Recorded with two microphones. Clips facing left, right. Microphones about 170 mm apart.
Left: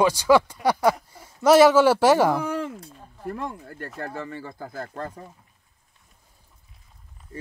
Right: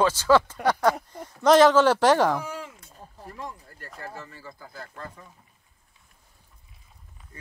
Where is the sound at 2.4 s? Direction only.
55° left (ahead or behind).